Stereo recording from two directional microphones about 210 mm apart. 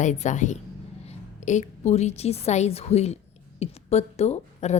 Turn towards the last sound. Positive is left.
turn(degrees=30)  # may be behind; listen again after turning